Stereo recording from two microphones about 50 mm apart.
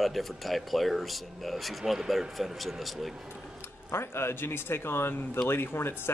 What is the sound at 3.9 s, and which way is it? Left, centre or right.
Speech, left.